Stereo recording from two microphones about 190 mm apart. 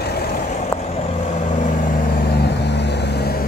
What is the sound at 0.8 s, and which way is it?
Vehicle, 30° left (ahead or behind).